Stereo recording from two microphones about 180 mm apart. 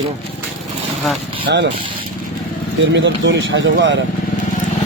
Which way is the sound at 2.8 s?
85° right.